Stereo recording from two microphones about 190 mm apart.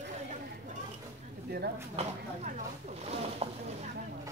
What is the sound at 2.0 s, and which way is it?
Speech, 35° right (ahead or behind).